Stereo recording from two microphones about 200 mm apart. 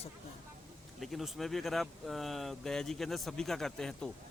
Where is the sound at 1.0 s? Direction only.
Centre (ahead or behind).